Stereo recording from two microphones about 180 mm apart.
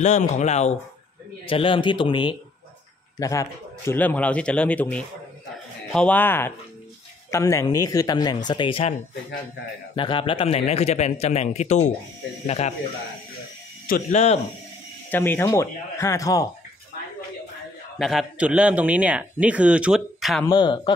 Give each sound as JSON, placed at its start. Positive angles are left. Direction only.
{"t": 0.0, "sound": "a man's voice", "side_deg": 40}
{"t": 9.9, "sound": "a man's voice", "side_deg": 30}
{"t": 13.8, "sound": "speech", "side_deg": 50}
{"t": 15.0, "sound": "a man's voice", "side_deg": 10}
{"t": 17.9, "sound": "a man's voice", "side_deg": 0}
{"t": 20.4, "sound": "speech", "side_deg": 25}